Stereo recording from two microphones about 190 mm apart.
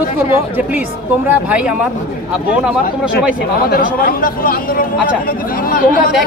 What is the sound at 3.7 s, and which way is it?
Speech, 50° left (ahead or behind).